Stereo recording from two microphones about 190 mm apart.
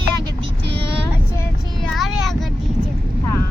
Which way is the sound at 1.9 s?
Centre (ahead or behind).